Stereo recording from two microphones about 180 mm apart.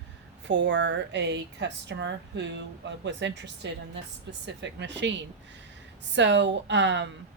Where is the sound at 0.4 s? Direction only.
80° right.